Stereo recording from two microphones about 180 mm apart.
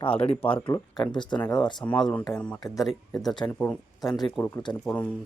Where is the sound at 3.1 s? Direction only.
20° left (ahead or behind).